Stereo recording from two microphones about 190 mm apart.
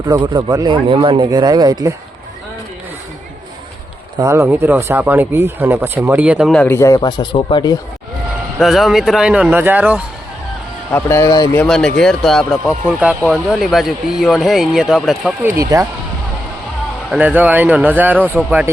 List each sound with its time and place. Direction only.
0.0 s speech: 20° right (ahead or behind)
4.2 s speech: 15° right (ahead or behind)
6.6 s speech: 10° left (ahead or behind)
8.5 s speech: centre (ahead or behind)
10.9 s speech: 15° left (ahead or behind)
11.6 s speech: centre (ahead or behind)
15.7 s speech: 20° right (ahead or behind)
17.1 s speech: 5° right (ahead or behind)